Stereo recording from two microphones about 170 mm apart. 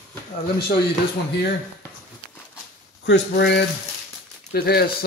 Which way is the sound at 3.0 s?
90° left.